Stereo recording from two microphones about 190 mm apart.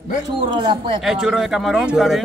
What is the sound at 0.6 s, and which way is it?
Speech, 25° right (ahead or behind).